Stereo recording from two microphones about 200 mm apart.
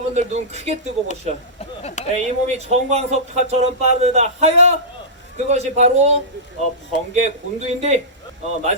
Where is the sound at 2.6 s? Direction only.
35° right (ahead or behind).